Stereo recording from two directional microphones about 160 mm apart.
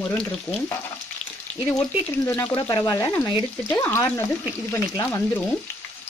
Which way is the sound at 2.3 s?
15° left (ahead or behind).